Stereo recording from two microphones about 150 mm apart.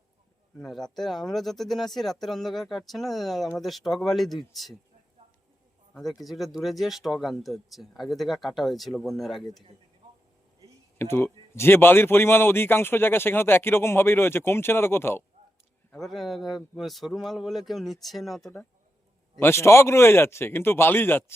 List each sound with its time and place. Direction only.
0.6 s speech: centre (ahead or behind)
5.9 s speech: centre (ahead or behind)
10.9 s a man's voice: 15° left (ahead or behind)
15.9 s speech: centre (ahead or behind)
19.4 s a man's voice: 15° left (ahead or behind)